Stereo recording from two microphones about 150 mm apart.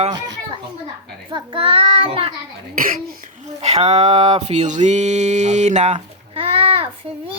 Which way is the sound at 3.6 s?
45° right (ahead or behind).